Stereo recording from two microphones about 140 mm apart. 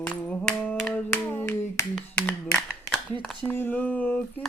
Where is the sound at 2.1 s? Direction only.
10° left (ahead or behind).